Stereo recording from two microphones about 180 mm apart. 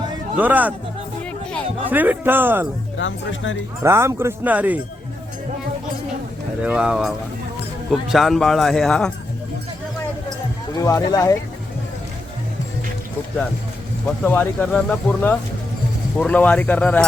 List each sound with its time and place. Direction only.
0.3 s speech: 10° right (ahead or behind)
1.9 s speech: 10° right (ahead or behind)
3.0 s speech: 90° left
3.8 s speech: 15° right (ahead or behind)
6.6 s a man's voice: 5° right (ahead or behind)
10.8 s speech: 20° left (ahead or behind)
14.3 s speech: 10° left (ahead or behind)